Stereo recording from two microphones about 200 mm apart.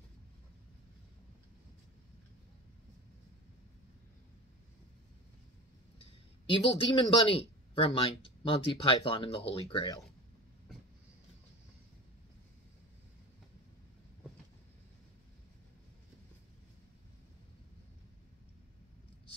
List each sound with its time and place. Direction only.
6.5 s speech: 30° left (ahead or behind)